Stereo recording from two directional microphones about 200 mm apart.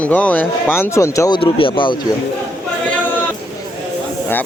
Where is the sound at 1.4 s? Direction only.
25° left (ahead or behind).